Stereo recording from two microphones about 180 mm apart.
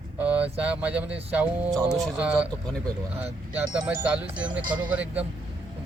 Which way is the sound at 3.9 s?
5° right (ahead or behind).